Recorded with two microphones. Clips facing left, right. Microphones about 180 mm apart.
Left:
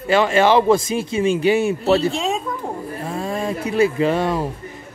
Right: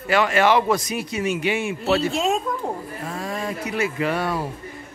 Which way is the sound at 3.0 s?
25° left (ahead or behind).